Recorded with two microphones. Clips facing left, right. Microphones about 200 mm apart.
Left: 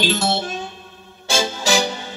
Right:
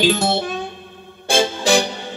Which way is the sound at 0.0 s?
55° right (ahead or behind).